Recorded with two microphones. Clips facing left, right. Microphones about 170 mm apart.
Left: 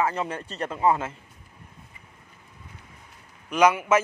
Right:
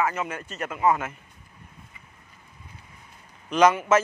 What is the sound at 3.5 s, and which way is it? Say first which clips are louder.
Speech: right 1 dB; 10° left (ahead or behind).